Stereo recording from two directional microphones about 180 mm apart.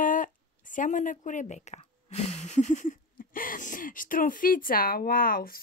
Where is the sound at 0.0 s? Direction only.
45° left (ahead or behind).